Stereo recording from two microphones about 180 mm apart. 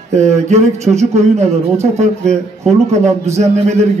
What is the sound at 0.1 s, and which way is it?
Speech, 40° right (ahead or behind).